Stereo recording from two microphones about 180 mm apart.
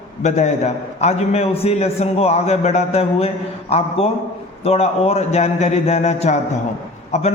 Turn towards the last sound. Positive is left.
turn(degrees=40)  # may be behind; listen again after turning